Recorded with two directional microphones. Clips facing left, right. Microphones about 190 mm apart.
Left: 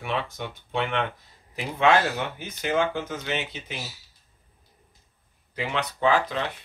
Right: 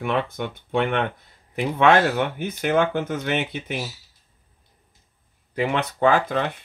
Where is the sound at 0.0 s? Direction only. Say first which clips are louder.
Right 5 dB; 55° right (ahead or behind).